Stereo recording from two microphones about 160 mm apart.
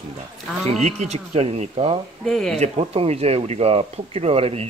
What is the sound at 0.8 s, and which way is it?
Speech, 40° right (ahead or behind).